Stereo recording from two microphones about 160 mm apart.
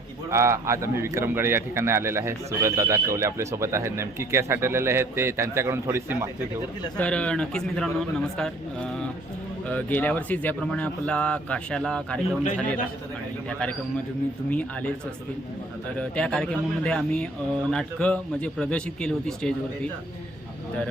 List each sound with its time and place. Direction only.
0.3 s a man's voice: 20° right (ahead or behind)
6.9 s speech: 5° left (ahead or behind)
13.5 s speech: 5° left (ahead or behind)
16.0 s speech: 5° left (ahead or behind)